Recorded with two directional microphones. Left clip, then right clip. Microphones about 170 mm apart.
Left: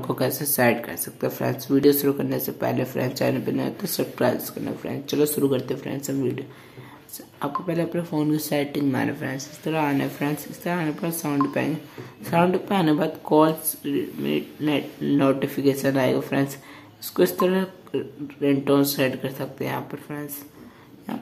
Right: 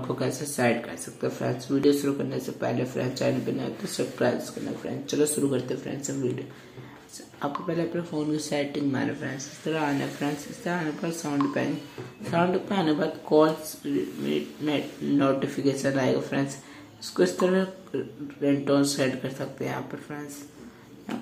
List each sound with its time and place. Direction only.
0.1 s speech: 45° left (ahead or behind)
5.0 s speech: 35° left (ahead or behind)
7.3 s speech: 30° left (ahead or behind)